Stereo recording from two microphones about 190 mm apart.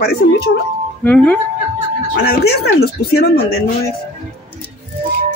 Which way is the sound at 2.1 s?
60° left (ahead or behind).